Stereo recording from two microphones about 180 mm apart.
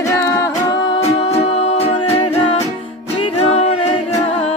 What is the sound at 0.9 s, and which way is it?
Music, 35° left (ahead or behind).